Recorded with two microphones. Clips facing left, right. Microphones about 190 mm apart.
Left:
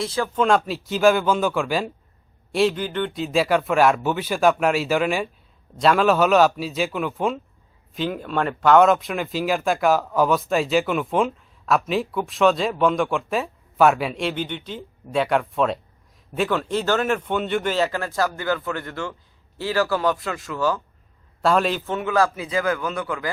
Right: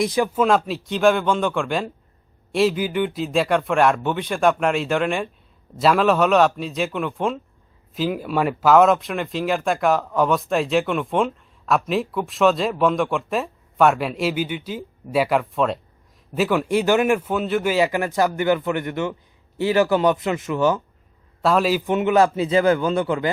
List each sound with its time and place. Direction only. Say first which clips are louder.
0.0 s speech: right 5 dB; 15° right (ahead or behind)
0.3 s a man's voice: left 3 dB; centre (ahead or behind); by 20.8 s 20° right (ahead or behind)
21.4 s speech: right 1 dB; centre (ahead or behind)
21.8 s a man's voice: right 4 dB; 20° right (ahead or behind)